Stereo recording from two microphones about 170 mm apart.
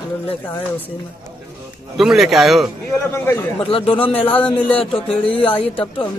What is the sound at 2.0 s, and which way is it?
Speech, centre (ahead or behind).